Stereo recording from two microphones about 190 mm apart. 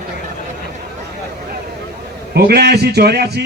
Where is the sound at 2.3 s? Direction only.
55° right (ahead or behind).